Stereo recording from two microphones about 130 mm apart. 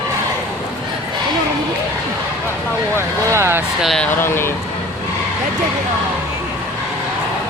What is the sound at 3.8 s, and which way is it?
Speech, 5° left (ahead or behind).